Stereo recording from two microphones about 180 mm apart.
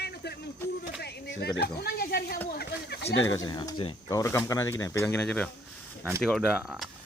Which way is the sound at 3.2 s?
20° left (ahead or behind).